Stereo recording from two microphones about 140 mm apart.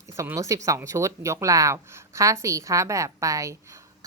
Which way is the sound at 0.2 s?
20° right (ahead or behind).